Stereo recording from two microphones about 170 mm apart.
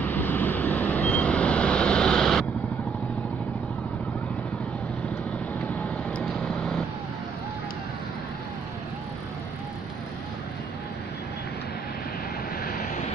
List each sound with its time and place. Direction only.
0.0 s vehicle: 10° left (ahead or behind)
5.8 s vehicle: 5° left (ahead or behind)
12.6 s vehicle: 50° left (ahead or behind)